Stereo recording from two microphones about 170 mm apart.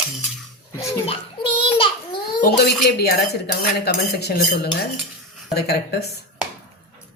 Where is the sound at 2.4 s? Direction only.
70° left (ahead or behind).